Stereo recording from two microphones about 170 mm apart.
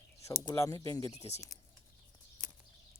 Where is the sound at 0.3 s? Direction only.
15° left (ahead or behind).